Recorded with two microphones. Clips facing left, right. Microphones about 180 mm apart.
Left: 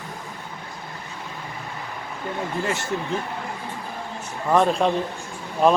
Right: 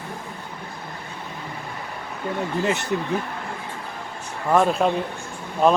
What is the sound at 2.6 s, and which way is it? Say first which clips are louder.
Speech: right 3 dB; 20° right (ahead or behind).